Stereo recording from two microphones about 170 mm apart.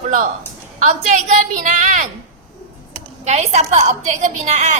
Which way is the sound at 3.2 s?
40° right (ahead or behind).